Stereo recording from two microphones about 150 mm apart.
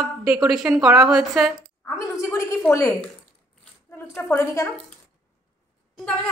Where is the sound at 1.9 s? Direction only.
20° left (ahead or behind).